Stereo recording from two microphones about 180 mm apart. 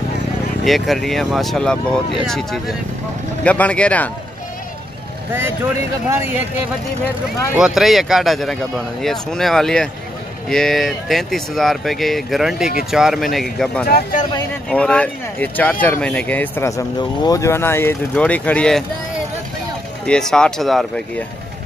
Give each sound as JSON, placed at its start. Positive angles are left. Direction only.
{"t": 0.7, "sound": "speech", "side_deg": 0}
{"t": 7.5, "sound": "speech", "side_deg": -5}
{"t": 13.8, "sound": "speech", "side_deg": 50}
{"t": 14.7, "sound": "speech", "side_deg": 5}
{"t": 20.1, "sound": "speech", "side_deg": 5}